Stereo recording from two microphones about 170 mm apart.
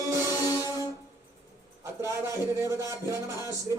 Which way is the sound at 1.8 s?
15° right (ahead or behind).